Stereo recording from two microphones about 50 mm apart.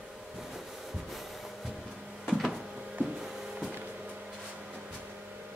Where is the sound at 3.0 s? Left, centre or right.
Centre.